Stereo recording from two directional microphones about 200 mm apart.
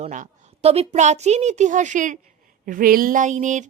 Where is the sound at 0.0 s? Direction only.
35° right (ahead or behind).